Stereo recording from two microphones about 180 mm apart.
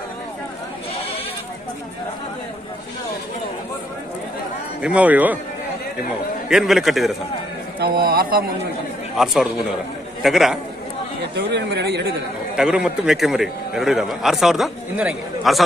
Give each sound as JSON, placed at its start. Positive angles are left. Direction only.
{"t": 4.8, "sound": "a man's voice", "side_deg": -5}
{"t": 6.5, "sound": "a man's voice", "side_deg": 0}
{"t": 7.8, "sound": "speech", "side_deg": -60}
{"t": 9.1, "sound": "a man's voice", "side_deg": 0}
{"t": 11.3, "sound": "speech", "side_deg": -70}
{"t": 12.5, "sound": "a man's voice", "side_deg": -5}